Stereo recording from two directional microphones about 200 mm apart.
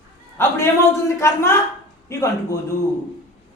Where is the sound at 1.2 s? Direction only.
15° left (ahead or behind).